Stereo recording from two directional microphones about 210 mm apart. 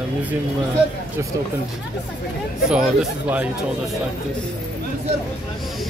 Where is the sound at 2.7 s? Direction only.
5° right (ahead or behind).